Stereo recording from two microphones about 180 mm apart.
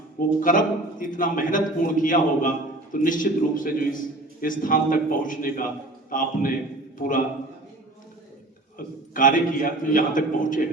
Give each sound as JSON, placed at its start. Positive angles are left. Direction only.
{"t": 0.2, "sound": "a man's voice", "side_deg": 50}
{"t": 8.8, "sound": "a man's voice", "side_deg": 50}